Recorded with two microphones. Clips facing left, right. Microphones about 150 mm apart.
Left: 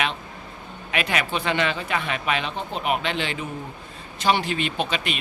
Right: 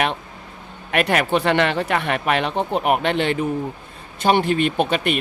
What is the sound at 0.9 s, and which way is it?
A man's voice, 55° right (ahead or behind).